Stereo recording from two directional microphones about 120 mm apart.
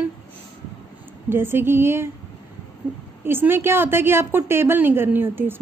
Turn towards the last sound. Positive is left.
turn(degrees=-20)  # may be behind; listen again after turning